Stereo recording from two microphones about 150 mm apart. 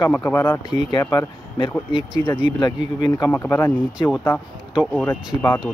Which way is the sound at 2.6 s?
30° left (ahead or behind).